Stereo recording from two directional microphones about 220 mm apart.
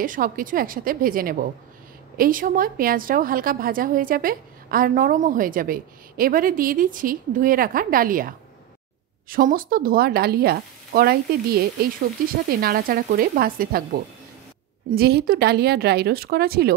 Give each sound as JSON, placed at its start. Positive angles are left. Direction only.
{"t": 0.0, "sound": "a woman's voice", "side_deg": -40}
{"t": 14.9, "sound": "speech", "side_deg": -45}